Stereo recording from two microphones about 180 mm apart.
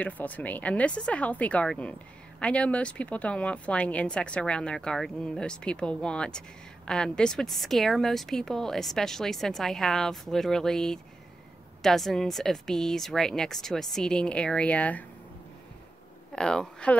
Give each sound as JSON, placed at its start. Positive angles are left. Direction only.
{"t": 0.0, "sound": "speech", "side_deg": 10}
{"t": 16.3, "sound": "speech", "side_deg": 5}